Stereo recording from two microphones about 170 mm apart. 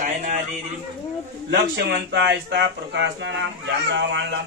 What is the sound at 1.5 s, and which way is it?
Speech, 80° right.